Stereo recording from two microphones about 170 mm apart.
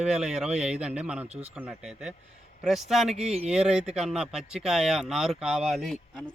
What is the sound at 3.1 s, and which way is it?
Speech, 40° right (ahead or behind).